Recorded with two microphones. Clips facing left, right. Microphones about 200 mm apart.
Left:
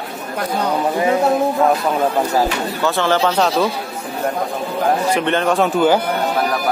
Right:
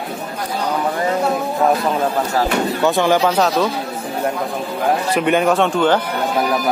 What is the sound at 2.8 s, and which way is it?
Speech, 15° right (ahead or behind).